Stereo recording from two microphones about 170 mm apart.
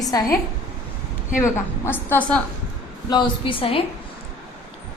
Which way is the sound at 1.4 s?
15° left (ahead or behind).